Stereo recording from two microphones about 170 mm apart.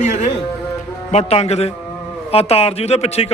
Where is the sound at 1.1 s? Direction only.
40° left (ahead or behind).